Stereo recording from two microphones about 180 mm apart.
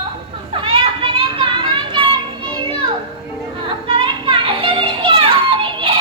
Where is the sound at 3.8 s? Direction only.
30° right (ahead or behind).